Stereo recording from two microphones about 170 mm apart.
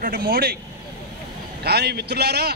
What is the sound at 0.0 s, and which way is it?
Speech, 60° right (ahead or behind).